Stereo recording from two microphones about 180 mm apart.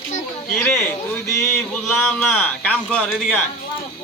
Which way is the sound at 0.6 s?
10° left (ahead or behind).